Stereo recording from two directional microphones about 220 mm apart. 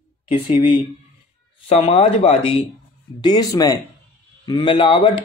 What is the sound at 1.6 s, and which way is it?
Speech, 30° left (ahead or behind).